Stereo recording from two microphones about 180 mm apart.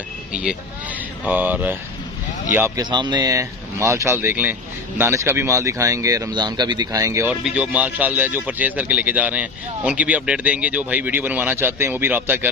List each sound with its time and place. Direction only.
0.3 s speech: 5° right (ahead or behind)